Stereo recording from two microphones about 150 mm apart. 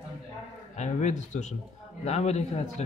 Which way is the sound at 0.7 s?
50° left (ahead or behind).